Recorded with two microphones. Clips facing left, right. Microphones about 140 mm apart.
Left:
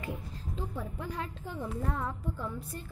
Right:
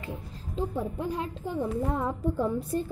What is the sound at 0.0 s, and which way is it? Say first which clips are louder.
A woman's voice: right 1 dB; 25° right (ahead or behind).